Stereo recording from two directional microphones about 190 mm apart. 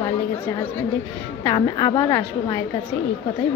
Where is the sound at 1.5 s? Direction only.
25° left (ahead or behind).